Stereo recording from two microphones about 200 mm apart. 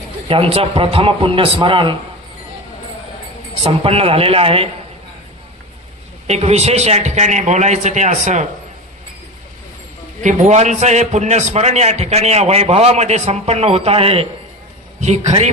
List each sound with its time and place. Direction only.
0.3 s a man's voice: 30° right (ahead or behind)
3.6 s a man's voice: 30° right (ahead or behind)
6.2 s a man's voice: 30° right (ahead or behind)
10.2 s a man's voice: 35° right (ahead or behind)